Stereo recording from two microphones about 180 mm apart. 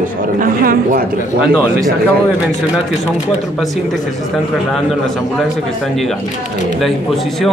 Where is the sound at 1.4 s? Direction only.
Centre (ahead or behind).